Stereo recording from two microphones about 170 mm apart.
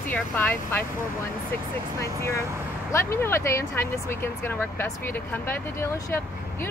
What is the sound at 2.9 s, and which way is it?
Speech, 15° left (ahead or behind).